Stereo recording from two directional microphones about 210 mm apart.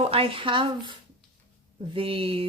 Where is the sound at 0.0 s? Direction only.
25° right (ahead or behind).